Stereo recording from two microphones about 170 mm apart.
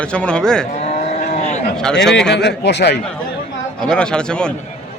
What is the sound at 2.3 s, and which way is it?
Speech, 80° left.